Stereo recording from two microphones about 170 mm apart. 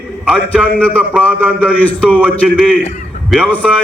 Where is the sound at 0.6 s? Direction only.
10° left (ahead or behind).